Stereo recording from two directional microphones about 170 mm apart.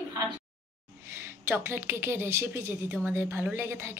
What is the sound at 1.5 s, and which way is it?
A woman's voice, 15° right (ahead or behind).